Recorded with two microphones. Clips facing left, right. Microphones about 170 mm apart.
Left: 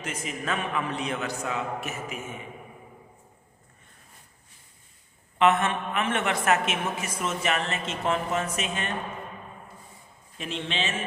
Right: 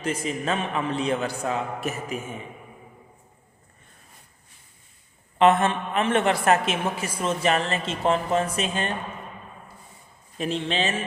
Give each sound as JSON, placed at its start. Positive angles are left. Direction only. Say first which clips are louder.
{"t": 0.0, "sound": "a man's voice", "louder": "right 6 dB", "side_deg": -30}
{"t": 5.4, "sound": "a man's voice", "louder": "right 3 dB", "side_deg": -35}
{"t": 10.3, "sound": "a man's voice", "louder": "right 6 dB", "side_deg": -40}